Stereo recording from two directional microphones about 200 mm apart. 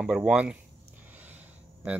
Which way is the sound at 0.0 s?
5° right (ahead or behind).